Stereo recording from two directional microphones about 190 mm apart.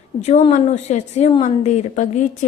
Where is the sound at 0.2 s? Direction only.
35° left (ahead or behind).